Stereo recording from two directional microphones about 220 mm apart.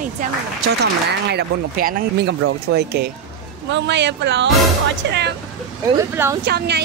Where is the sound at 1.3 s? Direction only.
45° right (ahead or behind).